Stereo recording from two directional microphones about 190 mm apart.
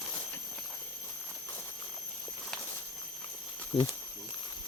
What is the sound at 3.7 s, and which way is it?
Speech, 25° left (ahead or behind).